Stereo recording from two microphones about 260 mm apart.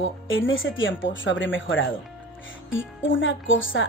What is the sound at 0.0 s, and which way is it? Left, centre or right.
Speech, left.